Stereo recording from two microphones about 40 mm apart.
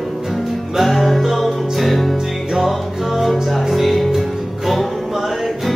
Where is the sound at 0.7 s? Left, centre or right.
Centre.